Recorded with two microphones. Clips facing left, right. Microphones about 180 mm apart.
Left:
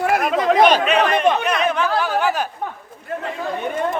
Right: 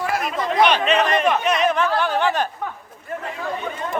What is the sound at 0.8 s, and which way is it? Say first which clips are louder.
A man's voice: left 2 dB; centre (ahead or behind).